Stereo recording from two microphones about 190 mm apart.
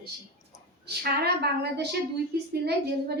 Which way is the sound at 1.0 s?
60° right (ahead or behind).